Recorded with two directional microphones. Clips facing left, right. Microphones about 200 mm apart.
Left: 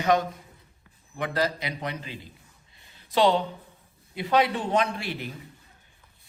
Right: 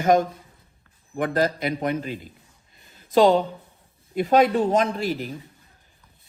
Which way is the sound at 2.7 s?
45° right (ahead or behind).